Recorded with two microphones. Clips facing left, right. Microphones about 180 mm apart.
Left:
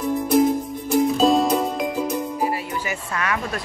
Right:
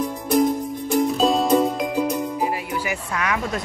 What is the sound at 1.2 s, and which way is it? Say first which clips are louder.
Music: left 3 dB; centre (ahead or behind).